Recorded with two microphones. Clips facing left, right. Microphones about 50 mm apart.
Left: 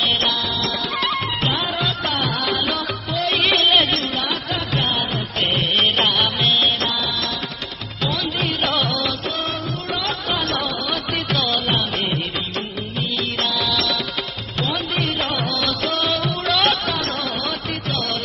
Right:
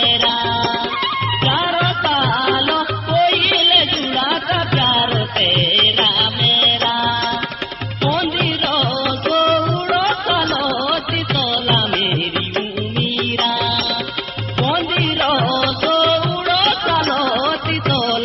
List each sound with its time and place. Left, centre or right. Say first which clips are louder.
0.0 s music: right 4 dB; right
14.6 s music: right 5 dB; right
16.4 s music: right 1 dB; centre
16.8 s music: right 7 dB; right